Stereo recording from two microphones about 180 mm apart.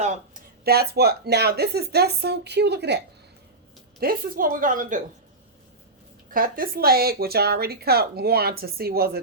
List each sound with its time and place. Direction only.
0.6 s speech: 60° right (ahead or behind)
4.0 s a woman's voice: 50° right (ahead or behind)
6.3 s speech: 50° right (ahead or behind)